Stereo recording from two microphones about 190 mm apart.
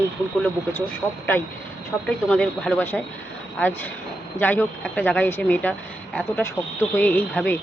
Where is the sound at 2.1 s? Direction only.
5° left (ahead or behind).